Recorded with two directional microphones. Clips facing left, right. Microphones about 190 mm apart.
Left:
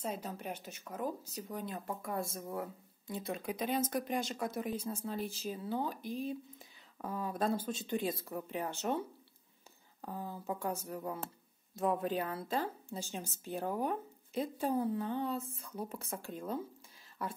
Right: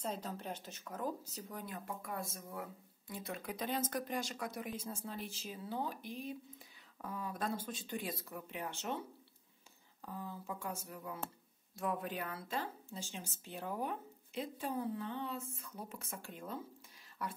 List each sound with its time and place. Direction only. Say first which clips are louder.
0.0 s speech: left 2 dB; 10° left (ahead or behind)
2.0 s speech: left 5 dB; 30° left (ahead or behind)
3.1 s speech: left 5 dB; 20° left (ahead or behind); by 9.0 s 40° left (ahead or behind)
10.0 s speech: left 5 dB; 40° left (ahead or behind)
11.7 s speech: left 6 dB; 25° left (ahead or behind)